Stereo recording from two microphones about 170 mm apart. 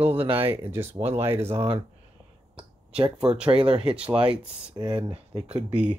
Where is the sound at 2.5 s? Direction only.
30° right (ahead or behind).